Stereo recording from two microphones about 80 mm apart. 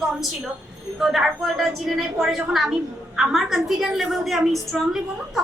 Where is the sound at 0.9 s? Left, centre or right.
Centre.